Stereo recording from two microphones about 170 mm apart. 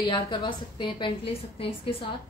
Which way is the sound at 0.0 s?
30° left (ahead or behind).